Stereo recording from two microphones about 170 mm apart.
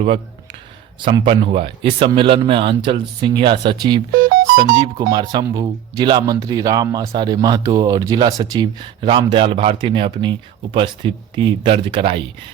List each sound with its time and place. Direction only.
1.0 s speech: 30° right (ahead or behind)
4.1 s speech: 60° right (ahead or behind)
4.7 s speech: 25° right (ahead or behind)